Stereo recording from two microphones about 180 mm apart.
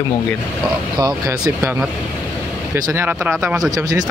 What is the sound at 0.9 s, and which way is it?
Speech, 20° right (ahead or behind).